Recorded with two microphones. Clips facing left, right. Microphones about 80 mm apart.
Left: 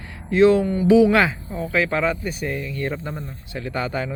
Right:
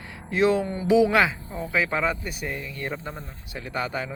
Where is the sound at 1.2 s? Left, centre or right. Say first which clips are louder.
Left 3 dB; centre.